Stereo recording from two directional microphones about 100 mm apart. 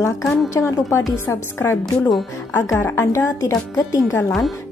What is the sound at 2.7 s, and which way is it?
A woman's voice, 25° left (ahead or behind).